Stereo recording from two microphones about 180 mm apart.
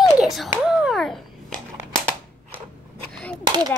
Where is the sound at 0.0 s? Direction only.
Centre (ahead or behind).